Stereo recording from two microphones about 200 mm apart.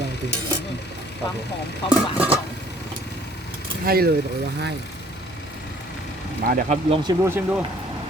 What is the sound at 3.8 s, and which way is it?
Speech, 50° right (ahead or behind).